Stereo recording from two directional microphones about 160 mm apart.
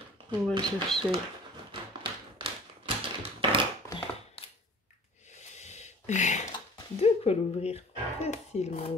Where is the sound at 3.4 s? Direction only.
30° right (ahead or behind).